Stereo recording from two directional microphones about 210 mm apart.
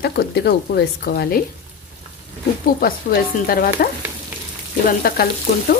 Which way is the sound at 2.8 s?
45° left (ahead or behind).